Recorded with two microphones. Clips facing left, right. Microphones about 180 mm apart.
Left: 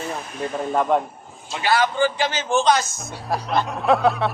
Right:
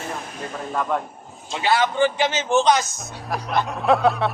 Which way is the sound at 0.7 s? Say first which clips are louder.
Left 4 dB; 25° left (ahead or behind).